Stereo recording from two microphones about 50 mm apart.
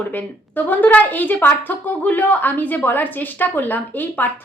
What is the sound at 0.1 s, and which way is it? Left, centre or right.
Speech, left.